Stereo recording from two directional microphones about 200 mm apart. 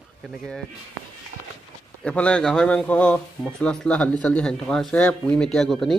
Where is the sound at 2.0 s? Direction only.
5° left (ahead or behind).